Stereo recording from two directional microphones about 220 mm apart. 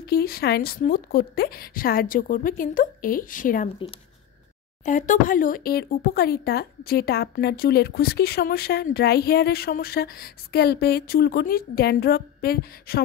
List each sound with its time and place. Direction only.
0.0 s a woman's voice: 45° left (ahead or behind)
4.8 s speech: 35° left (ahead or behind)